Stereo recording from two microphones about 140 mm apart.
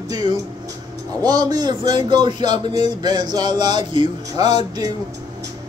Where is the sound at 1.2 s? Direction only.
25° right (ahead or behind).